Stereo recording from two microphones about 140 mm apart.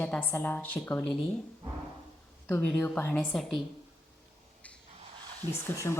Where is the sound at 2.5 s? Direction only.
10° left (ahead or behind).